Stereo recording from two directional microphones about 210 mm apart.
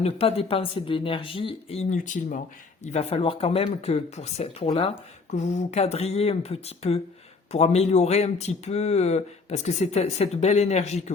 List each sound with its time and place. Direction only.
0.0 s speech: 30° left (ahead or behind)